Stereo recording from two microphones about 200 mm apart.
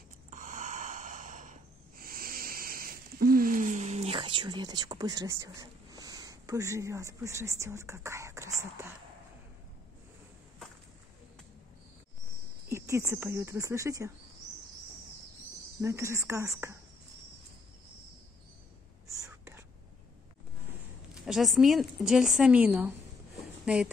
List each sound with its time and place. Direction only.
0.3 s a sound: 40° right (ahead or behind); by 8.9 s 15° right (ahead or behind)
12.6 s speech: 15° right (ahead or behind)
15.8 s speech: 15° right (ahead or behind)
19.1 s whispering: 15° right (ahead or behind)
21.3 s a woman's voice: centre (ahead or behind)